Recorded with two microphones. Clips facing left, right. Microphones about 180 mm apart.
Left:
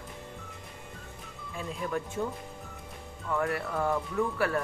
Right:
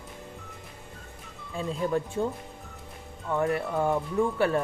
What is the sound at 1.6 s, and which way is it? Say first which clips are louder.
Speech: right 6 dB; 30° right (ahead or behind).